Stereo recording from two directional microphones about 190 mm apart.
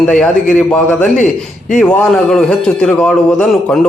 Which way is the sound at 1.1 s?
40° left (ahead or behind).